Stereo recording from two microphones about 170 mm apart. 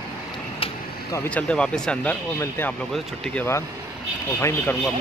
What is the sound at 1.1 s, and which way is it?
Speech, 10° left (ahead or behind).